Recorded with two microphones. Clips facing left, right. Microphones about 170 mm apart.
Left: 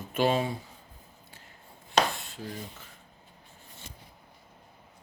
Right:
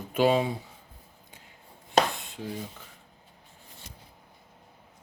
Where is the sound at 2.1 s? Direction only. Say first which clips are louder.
Right 2 dB; 20° right (ahead or behind).